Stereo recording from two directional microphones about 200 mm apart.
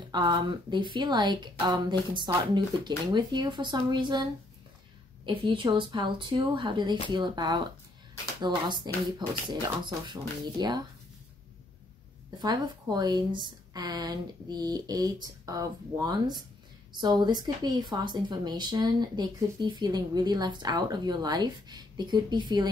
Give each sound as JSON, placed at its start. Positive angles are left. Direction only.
{"t": 0.1, "sound": "speech", "side_deg": -20}
{"t": 10.6, "sound": "speech", "side_deg": -20}
{"t": 12.4, "sound": "speech", "side_deg": -20}